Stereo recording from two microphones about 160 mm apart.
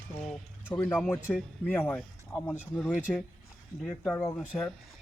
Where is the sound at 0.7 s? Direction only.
15° left (ahead or behind).